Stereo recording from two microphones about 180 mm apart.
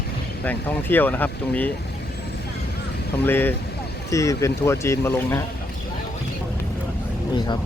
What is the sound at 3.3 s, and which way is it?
Speech, 10° left (ahead or behind).